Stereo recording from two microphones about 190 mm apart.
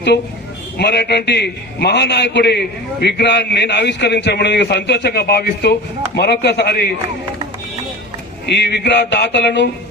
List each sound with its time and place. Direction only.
0.8 s a man's voice: 65° left (ahead or behind)
8.4 s a man's voice: 65° left (ahead or behind)